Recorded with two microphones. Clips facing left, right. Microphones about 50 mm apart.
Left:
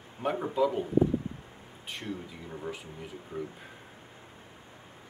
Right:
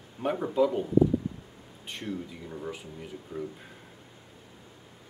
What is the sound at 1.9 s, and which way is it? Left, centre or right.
Speech, centre.